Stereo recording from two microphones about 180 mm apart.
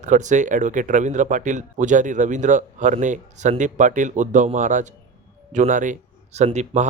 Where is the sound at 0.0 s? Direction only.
40° right (ahead or behind).